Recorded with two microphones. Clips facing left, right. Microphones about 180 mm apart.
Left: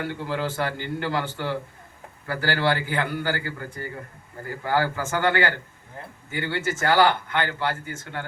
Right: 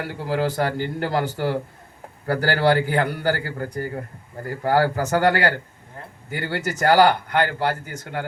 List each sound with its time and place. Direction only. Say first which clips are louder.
0.1 s speech: right 4 dB; 40° right (ahead or behind)